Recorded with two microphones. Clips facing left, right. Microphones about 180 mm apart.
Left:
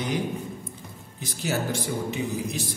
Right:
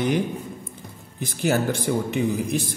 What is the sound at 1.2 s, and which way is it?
Speech, 55° right (ahead or behind).